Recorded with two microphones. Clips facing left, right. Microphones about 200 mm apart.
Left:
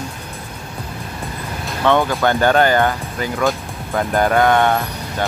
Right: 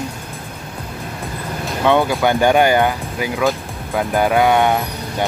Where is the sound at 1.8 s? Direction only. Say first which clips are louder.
Right 1 dB; 15° right (ahead or behind).